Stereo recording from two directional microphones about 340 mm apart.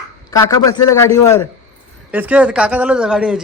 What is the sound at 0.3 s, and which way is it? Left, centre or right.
Speech, centre.